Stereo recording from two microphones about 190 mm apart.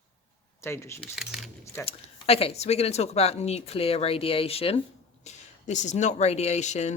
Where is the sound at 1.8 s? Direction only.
30° left (ahead or behind).